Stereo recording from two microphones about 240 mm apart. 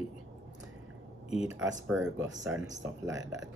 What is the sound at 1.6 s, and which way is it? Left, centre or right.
Speech, centre.